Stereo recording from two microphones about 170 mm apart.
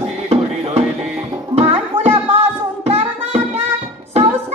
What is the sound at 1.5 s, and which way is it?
Music, 40° right (ahead or behind).